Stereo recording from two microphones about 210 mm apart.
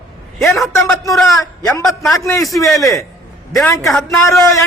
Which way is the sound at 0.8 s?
15° left (ahead or behind).